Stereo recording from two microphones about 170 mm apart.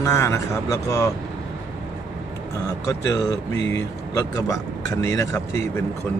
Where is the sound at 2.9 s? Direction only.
20° left (ahead or behind).